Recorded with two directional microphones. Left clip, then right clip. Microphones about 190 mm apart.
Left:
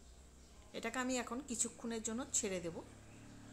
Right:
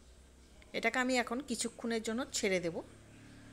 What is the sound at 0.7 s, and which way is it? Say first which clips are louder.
A woman's voice: right 8 dB; 30° right (ahead or behind).